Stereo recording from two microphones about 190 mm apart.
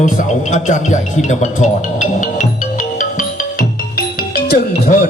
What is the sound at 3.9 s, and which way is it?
Music, 55° left (ahead or behind).